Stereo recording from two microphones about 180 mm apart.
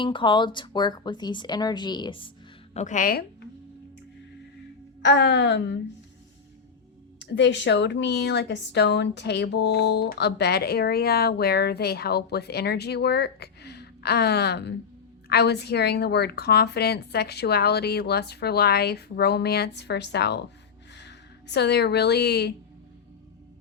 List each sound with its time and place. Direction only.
0.0 s speech: 25° left (ahead or behind)
2.7 s a woman's voice: 45° left (ahead or behind)
5.0 s a woman's voice: 75° left (ahead or behind)
7.2 s a woman's voice: 70° left (ahead or behind)